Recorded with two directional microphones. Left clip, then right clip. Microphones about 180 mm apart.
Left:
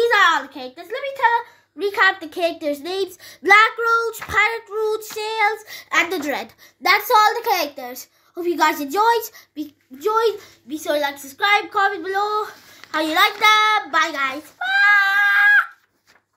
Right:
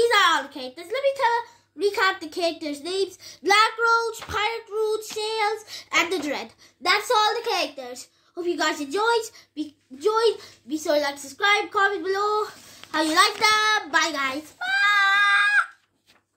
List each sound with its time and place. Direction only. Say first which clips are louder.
0.0 s a child's voice: left 3 dB; 35° left (ahead or behind); by 9.2 s 60° left (ahead or behind)
10.8 s speech: left 2 dB; 15° left (ahead or behind)
13.7 s a child's voice: left 4 dB; 10° right (ahead or behind)
14.6 s screaming: left 5 dB; 5° left (ahead or behind)